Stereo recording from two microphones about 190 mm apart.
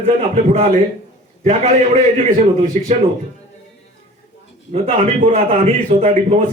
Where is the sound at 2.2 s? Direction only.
40° right (ahead or behind).